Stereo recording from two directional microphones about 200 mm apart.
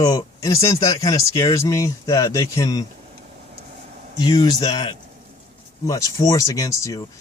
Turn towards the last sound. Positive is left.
turn(degrees=15)  # may be behind; listen again after turning